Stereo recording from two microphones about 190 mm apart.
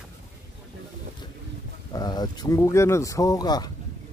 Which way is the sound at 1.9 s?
20° left (ahead or behind).